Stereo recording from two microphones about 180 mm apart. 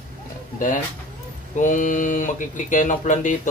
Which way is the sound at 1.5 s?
45° left (ahead or behind).